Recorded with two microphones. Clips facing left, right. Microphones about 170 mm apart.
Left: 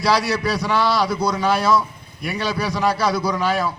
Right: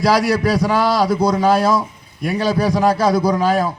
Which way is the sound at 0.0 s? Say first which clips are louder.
Right 4 dB; 50° right (ahead or behind).